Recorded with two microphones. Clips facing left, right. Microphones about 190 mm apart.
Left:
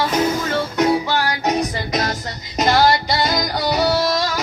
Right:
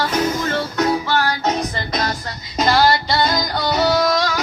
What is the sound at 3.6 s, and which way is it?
Music, 10° left (ahead or behind).